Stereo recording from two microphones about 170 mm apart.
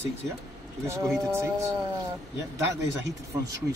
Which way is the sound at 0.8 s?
15° right (ahead or behind).